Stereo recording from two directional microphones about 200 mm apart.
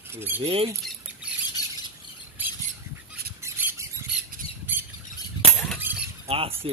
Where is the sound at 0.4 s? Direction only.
30° right (ahead or behind).